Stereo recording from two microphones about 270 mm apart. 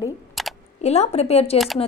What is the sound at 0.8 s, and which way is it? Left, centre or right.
Speech, left.